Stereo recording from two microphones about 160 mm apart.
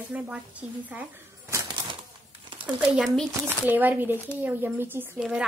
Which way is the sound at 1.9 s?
30° right (ahead or behind).